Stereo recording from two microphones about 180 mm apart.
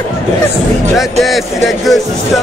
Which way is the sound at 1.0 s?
Centre (ahead or behind).